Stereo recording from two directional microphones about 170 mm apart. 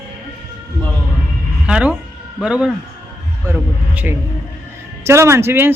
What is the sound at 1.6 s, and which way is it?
A woman's voice, 5° right (ahead or behind).